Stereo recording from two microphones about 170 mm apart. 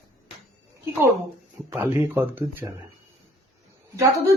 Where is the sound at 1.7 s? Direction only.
15° right (ahead or behind).